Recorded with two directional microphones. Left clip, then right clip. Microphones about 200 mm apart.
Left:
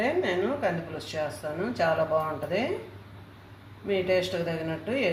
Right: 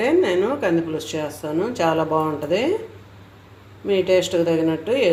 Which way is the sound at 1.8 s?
50° right (ahead or behind).